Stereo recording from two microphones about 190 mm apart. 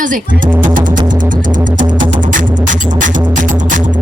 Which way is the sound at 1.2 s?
45° right (ahead or behind).